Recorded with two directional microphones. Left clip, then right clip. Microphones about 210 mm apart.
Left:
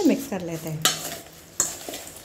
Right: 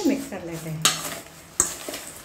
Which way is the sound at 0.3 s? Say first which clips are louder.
Left 3 dB; 45° left (ahead or behind).